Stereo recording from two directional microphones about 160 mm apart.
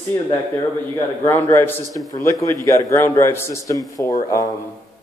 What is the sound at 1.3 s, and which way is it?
Speech, 15° left (ahead or behind).